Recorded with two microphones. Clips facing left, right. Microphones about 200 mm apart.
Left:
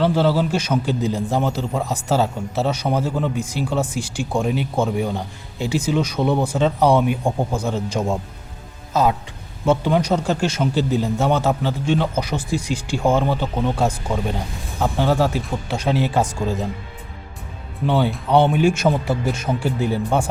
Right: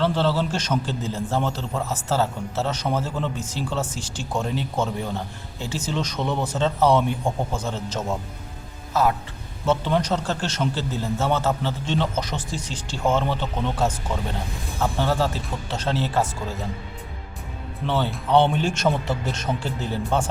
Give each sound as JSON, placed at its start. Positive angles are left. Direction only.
{"t": 0.0, "sound": "a man's voice", "side_deg": 10}
{"t": 17.8, "sound": "a man's voice", "side_deg": 15}